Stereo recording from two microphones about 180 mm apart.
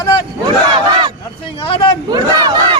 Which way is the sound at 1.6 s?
30° left (ahead or behind).